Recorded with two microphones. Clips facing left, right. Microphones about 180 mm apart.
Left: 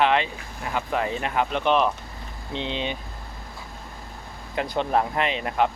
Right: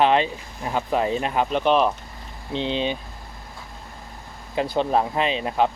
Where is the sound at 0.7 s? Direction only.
20° right (ahead or behind).